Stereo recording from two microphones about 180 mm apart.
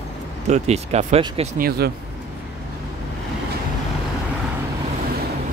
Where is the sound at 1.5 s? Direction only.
60° right (ahead or behind).